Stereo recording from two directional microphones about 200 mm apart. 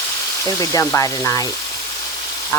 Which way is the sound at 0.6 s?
15° left (ahead or behind).